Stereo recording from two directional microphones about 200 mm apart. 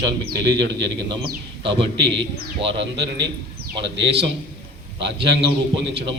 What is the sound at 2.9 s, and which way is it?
A man's voice, 60° right (ahead or behind).